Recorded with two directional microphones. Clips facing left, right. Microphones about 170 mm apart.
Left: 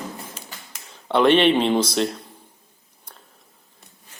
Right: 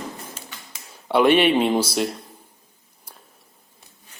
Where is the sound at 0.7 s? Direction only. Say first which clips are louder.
Right 1 dB; 10° right (ahead or behind).